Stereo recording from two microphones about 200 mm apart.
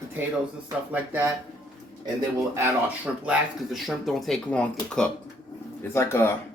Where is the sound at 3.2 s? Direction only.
Centre (ahead or behind).